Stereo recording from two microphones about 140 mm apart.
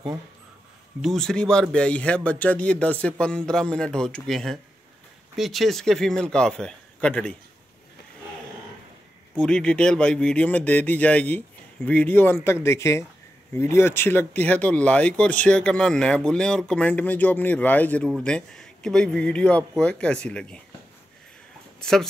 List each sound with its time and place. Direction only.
1.0 s a man's voice: 5° left (ahead or behind)
9.3 s a man's voice: 5° left (ahead or behind)
21.7 s speech: 5° left (ahead or behind)